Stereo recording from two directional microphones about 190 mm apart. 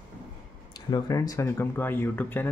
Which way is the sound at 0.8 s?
20° left (ahead or behind).